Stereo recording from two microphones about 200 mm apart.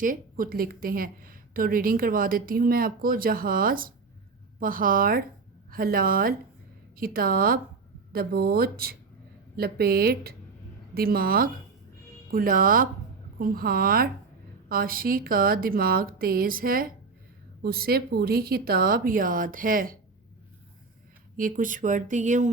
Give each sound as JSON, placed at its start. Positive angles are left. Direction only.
{"t": 0.0, "sound": "a woman's voice", "side_deg": -45}
{"t": 21.3, "sound": "speech", "side_deg": -40}